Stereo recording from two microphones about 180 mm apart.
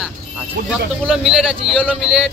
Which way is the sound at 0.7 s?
Centre (ahead or behind).